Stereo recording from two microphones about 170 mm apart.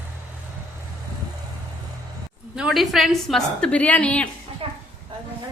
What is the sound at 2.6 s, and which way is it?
A woman's voice, centre (ahead or behind).